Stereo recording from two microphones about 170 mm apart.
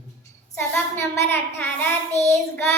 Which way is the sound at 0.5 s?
15° left (ahead or behind).